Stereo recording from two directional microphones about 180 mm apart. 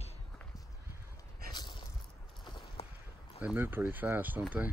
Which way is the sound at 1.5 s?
25° left (ahead or behind).